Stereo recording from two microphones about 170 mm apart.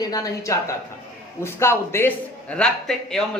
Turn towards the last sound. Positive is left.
turn(degrees=5)  # may be behind; listen again after turning